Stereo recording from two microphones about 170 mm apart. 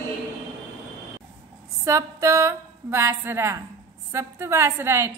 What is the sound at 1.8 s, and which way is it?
A woman's voice, 15° right (ahead or behind).